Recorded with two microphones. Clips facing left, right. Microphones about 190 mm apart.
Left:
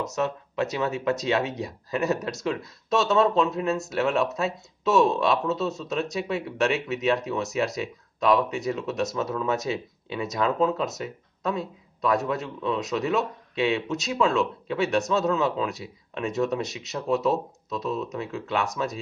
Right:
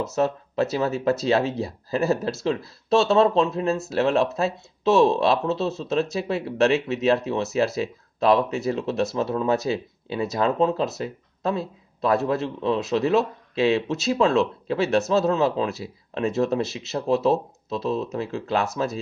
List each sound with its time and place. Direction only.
0.1 s speech: 35° right (ahead or behind)